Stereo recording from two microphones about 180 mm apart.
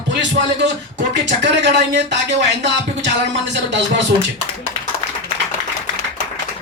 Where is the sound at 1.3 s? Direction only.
75° right (ahead or behind).